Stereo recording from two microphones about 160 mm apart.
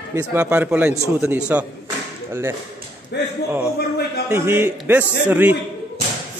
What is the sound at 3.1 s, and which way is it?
Speech, 90° left.